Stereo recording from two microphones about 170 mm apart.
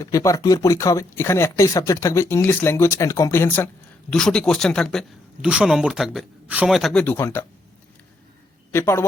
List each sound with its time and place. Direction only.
0.0 s speech: 20° left (ahead or behind); by 7.0 s centre (ahead or behind)
7.0 s speech: 15° left (ahead or behind)
8.7 s speech: 15° left (ahead or behind)